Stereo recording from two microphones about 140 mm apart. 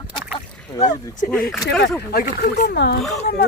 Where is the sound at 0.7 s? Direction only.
30° left (ahead or behind).